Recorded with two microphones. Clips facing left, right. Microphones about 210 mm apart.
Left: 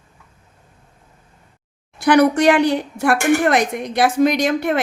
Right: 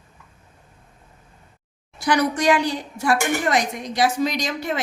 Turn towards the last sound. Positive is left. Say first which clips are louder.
# left 7 dB
turn(degrees=60)  # may be behind; listen again after turning